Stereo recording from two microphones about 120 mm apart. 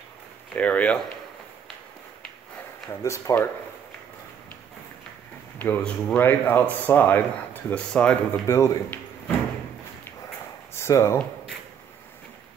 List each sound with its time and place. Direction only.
0.6 s speech: 10° left (ahead or behind)
2.9 s speech: 25° left (ahead or behind)
5.6 s speech: 15° left (ahead or behind)
8.5 s speech: 25° left (ahead or behind)
10.8 s speech: 25° left (ahead or behind)